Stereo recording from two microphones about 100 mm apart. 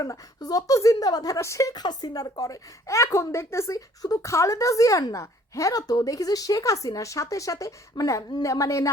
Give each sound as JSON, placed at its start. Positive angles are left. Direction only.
{"t": 0.0, "sound": "speech", "side_deg": 40}